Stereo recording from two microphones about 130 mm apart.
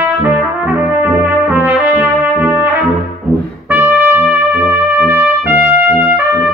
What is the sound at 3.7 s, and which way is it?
Trumpet, 15° right (ahead or behind).